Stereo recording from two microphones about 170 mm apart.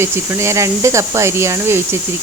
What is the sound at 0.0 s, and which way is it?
Speech, 15° right (ahead or behind).